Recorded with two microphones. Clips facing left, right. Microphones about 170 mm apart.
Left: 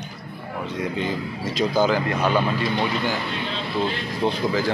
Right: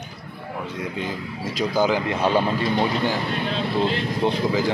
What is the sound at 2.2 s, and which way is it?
Speech, 30° right (ahead or behind).